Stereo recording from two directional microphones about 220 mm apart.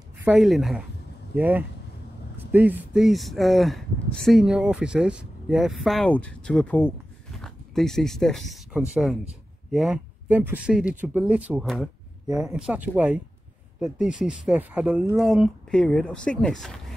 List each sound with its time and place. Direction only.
0.2 s speech: centre (ahead or behind)